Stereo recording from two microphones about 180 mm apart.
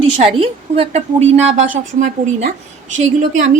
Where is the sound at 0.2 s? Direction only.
35° right (ahead or behind).